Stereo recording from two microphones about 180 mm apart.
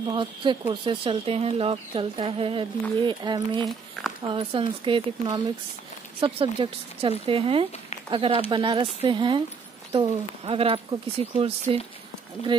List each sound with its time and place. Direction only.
0.0 s speech: 25° right (ahead or behind)